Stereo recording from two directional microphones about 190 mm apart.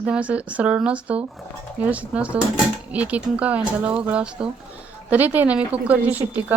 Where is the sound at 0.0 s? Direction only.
5° right (ahead or behind).